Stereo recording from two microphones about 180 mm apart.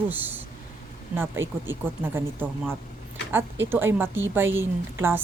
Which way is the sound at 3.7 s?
10° right (ahead or behind).